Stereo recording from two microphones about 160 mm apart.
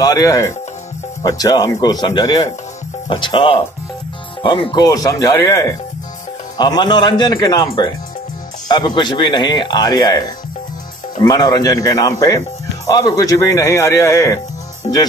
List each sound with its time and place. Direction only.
0.0 s speech: 20° left (ahead or behind)